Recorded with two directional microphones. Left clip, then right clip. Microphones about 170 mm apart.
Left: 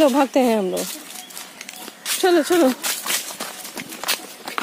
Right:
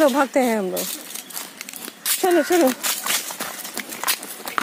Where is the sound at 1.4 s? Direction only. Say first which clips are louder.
Right 1 dB; 70° right (ahead or behind).